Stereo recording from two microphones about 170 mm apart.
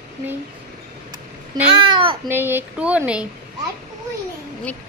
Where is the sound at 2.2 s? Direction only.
15° right (ahead or behind).